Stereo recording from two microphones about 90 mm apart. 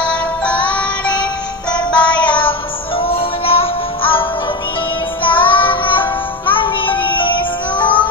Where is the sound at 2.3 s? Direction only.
75° left (ahead or behind).